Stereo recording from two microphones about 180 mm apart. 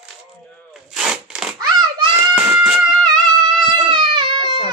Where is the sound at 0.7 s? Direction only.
5° right (ahead or behind).